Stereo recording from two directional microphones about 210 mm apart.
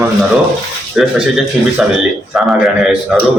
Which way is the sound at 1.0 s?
5° right (ahead or behind).